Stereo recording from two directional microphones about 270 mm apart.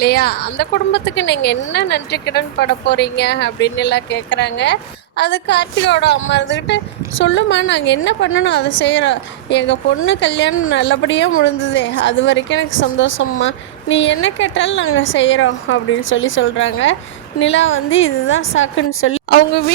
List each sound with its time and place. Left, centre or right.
0.0 s a woman's voice: left